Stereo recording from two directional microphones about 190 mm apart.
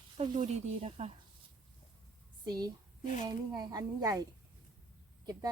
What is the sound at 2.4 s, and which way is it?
A woman's voice, 20° right (ahead or behind).